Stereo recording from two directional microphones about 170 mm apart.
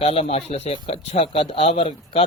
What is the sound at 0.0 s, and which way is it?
Speech, 35° left (ahead or behind).